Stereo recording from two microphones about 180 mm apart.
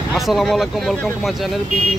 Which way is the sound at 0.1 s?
Centre (ahead or behind).